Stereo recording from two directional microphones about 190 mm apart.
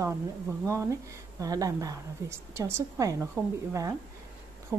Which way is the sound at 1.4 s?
20° right (ahead or behind).